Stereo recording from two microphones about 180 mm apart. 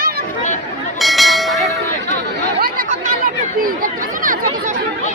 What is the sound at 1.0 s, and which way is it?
Bell, centre (ahead or behind).